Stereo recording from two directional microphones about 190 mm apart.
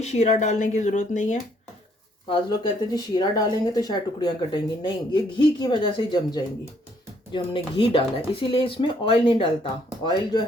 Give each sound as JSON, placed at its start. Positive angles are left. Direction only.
{"t": 0.0, "sound": "speech", "side_deg": 35}
{"t": 2.2, "sound": "speech", "side_deg": 25}